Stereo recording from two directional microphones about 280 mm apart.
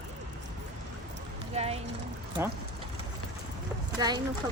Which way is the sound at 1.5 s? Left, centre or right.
Right.